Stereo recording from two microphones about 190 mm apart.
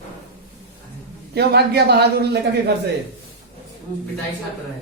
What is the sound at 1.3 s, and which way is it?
Speech, 60° right (ahead or behind).